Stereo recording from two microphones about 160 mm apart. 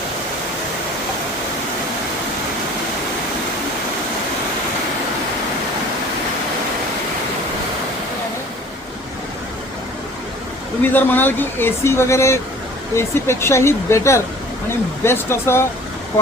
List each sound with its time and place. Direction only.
10.8 s speech: 10° left (ahead or behind)